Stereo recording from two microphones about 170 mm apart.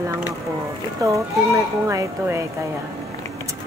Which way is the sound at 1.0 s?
20° right (ahead or behind).